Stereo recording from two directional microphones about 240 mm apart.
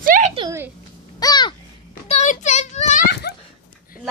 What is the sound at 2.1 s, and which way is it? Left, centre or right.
Speech, left.